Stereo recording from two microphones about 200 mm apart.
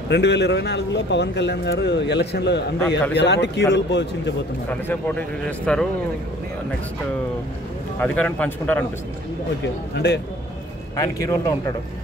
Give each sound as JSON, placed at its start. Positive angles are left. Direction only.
{"t": 0.1, "sound": "speech", "side_deg": 60}
{"t": 4.6, "sound": "speech", "side_deg": 10}
{"t": 8.0, "sound": "speech", "side_deg": 5}
{"t": 9.9, "sound": "speech", "side_deg": 60}
{"t": 11.0, "sound": "speech", "side_deg": 15}